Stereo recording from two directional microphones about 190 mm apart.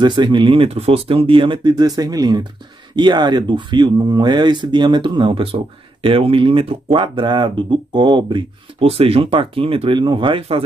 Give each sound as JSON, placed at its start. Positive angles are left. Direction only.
{"t": 0.0, "sound": "speech", "side_deg": -25}